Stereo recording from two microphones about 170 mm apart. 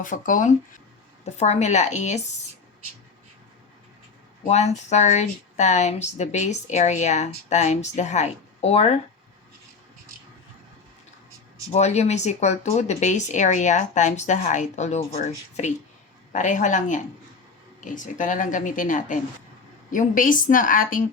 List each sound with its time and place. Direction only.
0.0 s speech: 50° left (ahead or behind)
4.4 s speech: 40° left (ahead or behind)
11.7 s speech: 40° left (ahead or behind)